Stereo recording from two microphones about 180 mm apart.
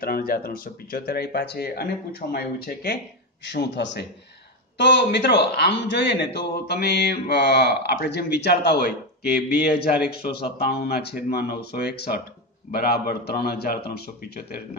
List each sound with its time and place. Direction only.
0.0 s speech: 55° left (ahead or behind)
3.4 s a man's voice: 75° left (ahead or behind)